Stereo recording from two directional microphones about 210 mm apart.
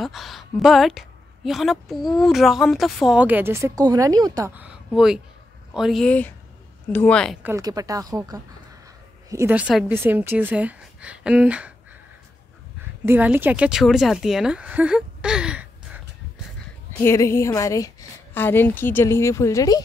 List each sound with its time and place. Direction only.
0.0 s a woman's voice: centre (ahead or behind)
7.4 s a woman's voice: 15° right (ahead or behind)
13.0 s a woman's voice: 10° right (ahead or behind)
17.0 s a woman's voice: 10° left (ahead or behind)